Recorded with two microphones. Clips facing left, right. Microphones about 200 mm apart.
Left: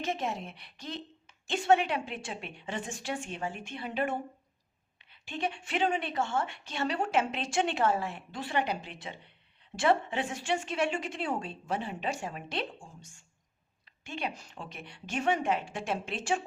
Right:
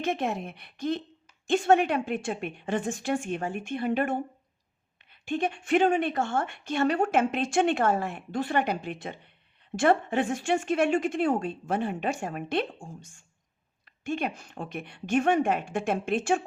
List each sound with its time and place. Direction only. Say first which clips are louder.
0.0 s speech: right 5 dB; 55° right (ahead or behind)